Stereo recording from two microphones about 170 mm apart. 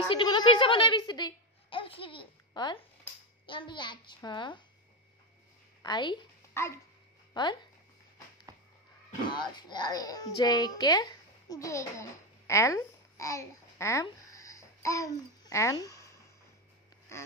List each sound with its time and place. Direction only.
0.1 s a woman's voice: 25° left (ahead or behind)
5.8 s a woman's voice: 25° left (ahead or behind)
6.5 s speech: 15° left (ahead or behind)
7.3 s a child's voice: 25° left (ahead or behind)
9.3 s a child's voice: 25° left (ahead or behind)
14.0 s babbling: 20° left (ahead or behind)